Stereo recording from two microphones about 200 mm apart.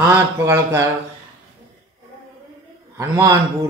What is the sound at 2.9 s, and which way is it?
Speech, 15° right (ahead or behind).